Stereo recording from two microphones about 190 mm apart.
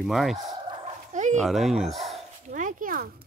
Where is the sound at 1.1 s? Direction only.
40° right (ahead or behind).